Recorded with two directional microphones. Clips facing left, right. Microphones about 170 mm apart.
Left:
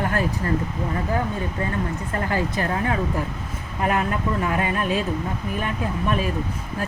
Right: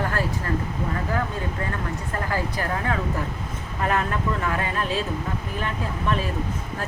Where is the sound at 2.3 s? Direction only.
20° left (ahead or behind).